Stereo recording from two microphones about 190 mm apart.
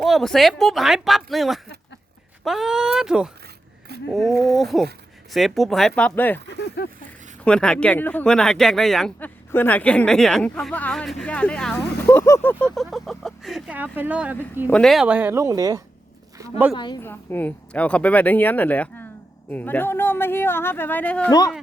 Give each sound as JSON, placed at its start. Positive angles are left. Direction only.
{"t": 0.0, "sound": "speech", "side_deg": 0}
{"t": 6.8, "sound": "speech", "side_deg": 60}
{"t": 7.4, "sound": "speech", "side_deg": 5}
{"t": 12.6, "sound": "speech", "side_deg": 0}
{"t": 14.7, "sound": "speech", "side_deg": 0}
{"t": 16.7, "sound": "a woman's voice", "side_deg": 25}
{"t": 17.0, "sound": "speech", "side_deg": 10}
{"t": 21.2, "sound": "a woman's voice", "side_deg": 20}